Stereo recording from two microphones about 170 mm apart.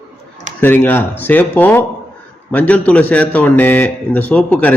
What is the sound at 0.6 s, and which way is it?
A man's voice, 10° left (ahead or behind).